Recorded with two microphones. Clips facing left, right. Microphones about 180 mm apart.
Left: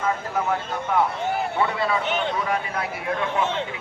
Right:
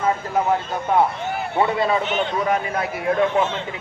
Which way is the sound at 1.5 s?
25° right (ahead or behind).